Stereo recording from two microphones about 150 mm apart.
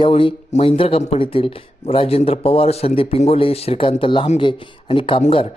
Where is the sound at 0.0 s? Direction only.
35° left (ahead or behind).